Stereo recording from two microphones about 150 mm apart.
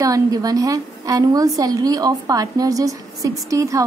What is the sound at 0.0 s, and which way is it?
A woman's voice, 25° right (ahead or behind).